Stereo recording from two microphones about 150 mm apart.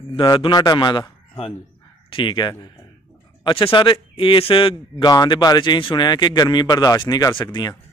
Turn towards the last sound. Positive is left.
turn(degrees=25)  # may be behind; listen again after turning